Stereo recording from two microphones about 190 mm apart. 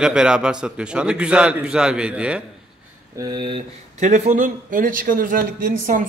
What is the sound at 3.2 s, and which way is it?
Speech, 25° right (ahead or behind).